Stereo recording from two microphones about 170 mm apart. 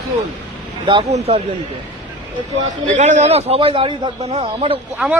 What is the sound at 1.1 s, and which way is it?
Speech, 35° right (ahead or behind).